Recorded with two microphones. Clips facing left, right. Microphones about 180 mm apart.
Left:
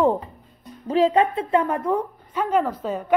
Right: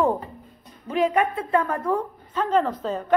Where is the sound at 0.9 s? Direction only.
30° left (ahead or behind).